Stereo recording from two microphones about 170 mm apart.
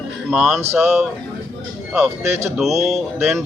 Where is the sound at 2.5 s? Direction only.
Centre (ahead or behind).